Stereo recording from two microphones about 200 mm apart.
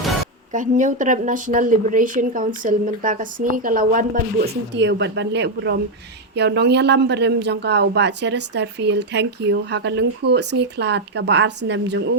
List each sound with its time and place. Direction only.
0.5 s a woman's voice: 40° right (ahead or behind); by 11.9 s 60° right (ahead or behind)